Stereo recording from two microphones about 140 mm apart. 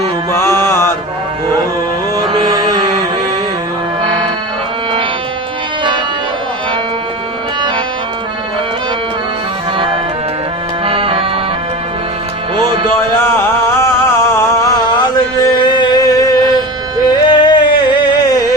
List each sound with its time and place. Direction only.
0.3 s mantra: 20° left (ahead or behind)
2.1 s music: 30° right (ahead or behind)
10.8 s music: 40° right (ahead or behind)
12.5 s music: 35° right (ahead or behind)
13.0 s a sound: 20° left (ahead or behind)